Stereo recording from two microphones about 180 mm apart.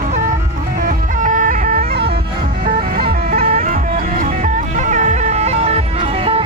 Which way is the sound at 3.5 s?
50° right (ahead or behind).